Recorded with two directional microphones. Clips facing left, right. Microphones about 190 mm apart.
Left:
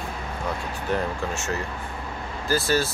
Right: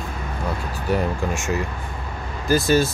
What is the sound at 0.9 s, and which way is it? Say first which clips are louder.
Speech: right 4 dB; 10° right (ahead or behind).